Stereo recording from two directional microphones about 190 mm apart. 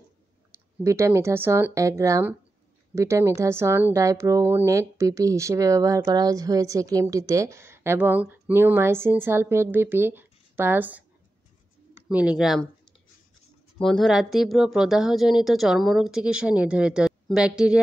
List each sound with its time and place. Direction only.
0.8 s speech: 15° right (ahead or behind)
12.1 s speech: 5° right (ahead or behind)
13.7 s speech: centre (ahead or behind)